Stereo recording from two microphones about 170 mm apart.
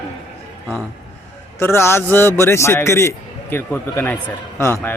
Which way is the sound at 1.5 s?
15° left (ahead or behind).